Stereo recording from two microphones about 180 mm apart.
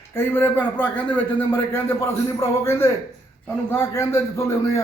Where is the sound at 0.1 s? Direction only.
10° left (ahead or behind).